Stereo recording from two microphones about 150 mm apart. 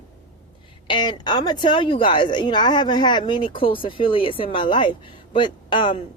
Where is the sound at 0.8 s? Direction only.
30° left (ahead or behind).